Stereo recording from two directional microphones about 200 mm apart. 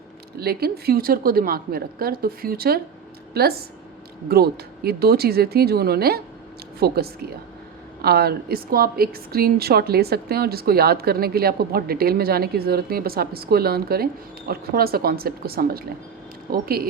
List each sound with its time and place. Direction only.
0.3 s a woman's voice: 50° right (ahead or behind)